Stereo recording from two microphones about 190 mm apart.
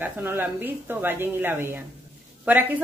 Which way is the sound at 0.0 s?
10° right (ahead or behind).